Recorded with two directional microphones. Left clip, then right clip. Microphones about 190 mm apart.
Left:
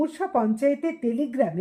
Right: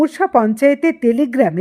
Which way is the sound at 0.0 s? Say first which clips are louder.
Right 10 dB; 35° right (ahead or behind).